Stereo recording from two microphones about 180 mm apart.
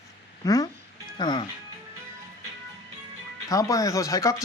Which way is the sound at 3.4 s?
20° left (ahead or behind).